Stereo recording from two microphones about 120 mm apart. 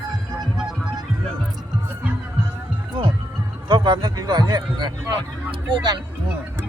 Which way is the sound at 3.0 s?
45° right (ahead or behind).